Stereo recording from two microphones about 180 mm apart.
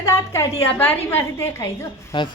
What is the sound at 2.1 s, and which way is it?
Speech, 25° left (ahead or behind).